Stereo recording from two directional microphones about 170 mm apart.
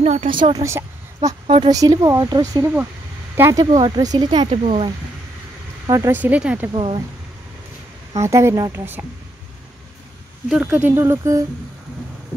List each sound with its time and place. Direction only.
0.0 s a woman's voice: 35° right (ahead or behind)
5.9 s speech: 20° right (ahead or behind)
6.7 s speech: 35° right (ahead or behind)
8.1 s speech: 15° right (ahead or behind)
10.5 s speech: 10° right (ahead or behind)